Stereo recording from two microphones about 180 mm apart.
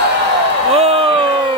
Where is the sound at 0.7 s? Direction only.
35° right (ahead or behind).